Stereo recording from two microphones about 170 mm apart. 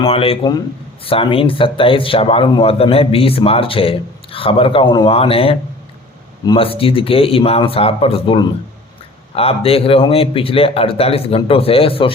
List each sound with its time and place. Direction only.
0.0 s speech: 35° left (ahead or behind)